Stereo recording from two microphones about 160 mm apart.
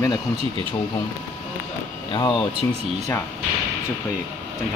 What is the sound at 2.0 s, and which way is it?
Speech, 30° left (ahead or behind).